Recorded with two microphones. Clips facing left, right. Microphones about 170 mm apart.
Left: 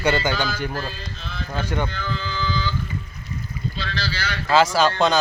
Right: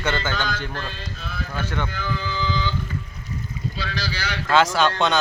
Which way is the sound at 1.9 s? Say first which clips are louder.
Right 1 dB; 10° right (ahead or behind).